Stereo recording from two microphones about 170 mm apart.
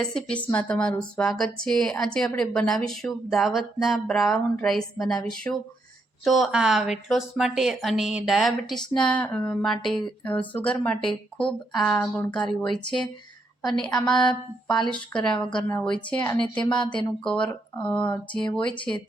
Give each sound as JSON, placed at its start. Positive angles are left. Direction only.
{"t": 0.0, "sound": "a woman's voice", "side_deg": 5}
{"t": 14.0, "sound": "a woman's voice", "side_deg": 5}
{"t": 16.8, "sound": "speech", "side_deg": 30}
{"t": 17.7, "sound": "a woman's voice", "side_deg": 10}